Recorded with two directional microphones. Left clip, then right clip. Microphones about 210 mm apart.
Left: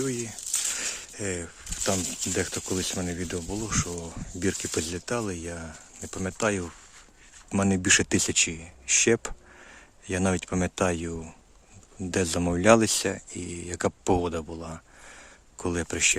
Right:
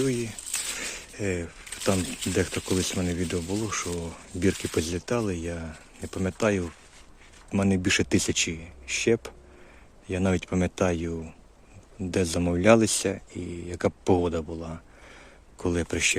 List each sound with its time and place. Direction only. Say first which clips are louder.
0.0 s speech: right 3 dB; 5° left (ahead or behind)